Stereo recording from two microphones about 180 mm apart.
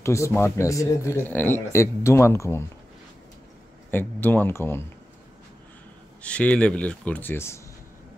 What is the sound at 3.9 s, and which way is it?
Speech, 10° left (ahead or behind).